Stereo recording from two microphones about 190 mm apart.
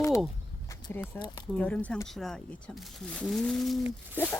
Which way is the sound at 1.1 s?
10° left (ahead or behind).